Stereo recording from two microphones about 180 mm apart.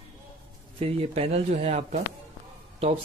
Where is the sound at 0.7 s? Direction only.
30° right (ahead or behind).